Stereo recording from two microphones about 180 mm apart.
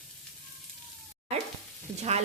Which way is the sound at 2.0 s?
35° right (ahead or behind).